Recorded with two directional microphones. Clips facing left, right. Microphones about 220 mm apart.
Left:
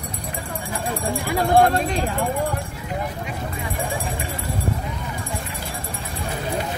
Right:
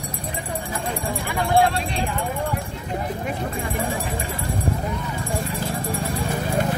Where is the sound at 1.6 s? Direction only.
45° left (ahead or behind).